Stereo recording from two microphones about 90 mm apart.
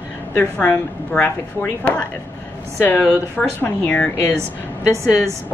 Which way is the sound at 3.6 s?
20° left (ahead or behind).